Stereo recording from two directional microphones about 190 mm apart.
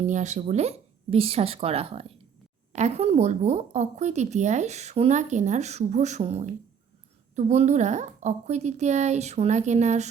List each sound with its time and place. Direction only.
0.0 s a woman's voice: 40° right (ahead or behind)